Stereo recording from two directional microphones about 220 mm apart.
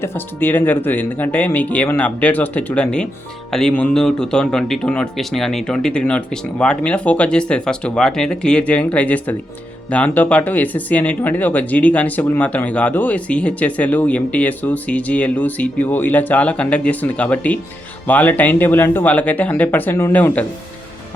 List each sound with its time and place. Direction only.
0.0 s speech: 10° left (ahead or behind)